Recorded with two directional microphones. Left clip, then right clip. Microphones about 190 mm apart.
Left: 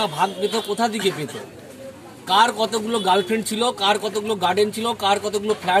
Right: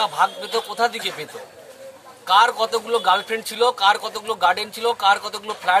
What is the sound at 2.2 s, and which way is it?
A man's voice, centre (ahead or behind).